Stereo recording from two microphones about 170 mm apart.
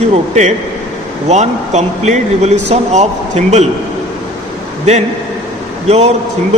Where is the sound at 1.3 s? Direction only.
40° right (ahead or behind).